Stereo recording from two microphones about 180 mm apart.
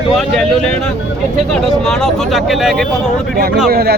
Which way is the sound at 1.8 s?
Centre (ahead or behind).